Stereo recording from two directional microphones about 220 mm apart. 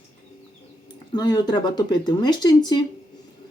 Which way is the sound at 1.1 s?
20° left (ahead or behind).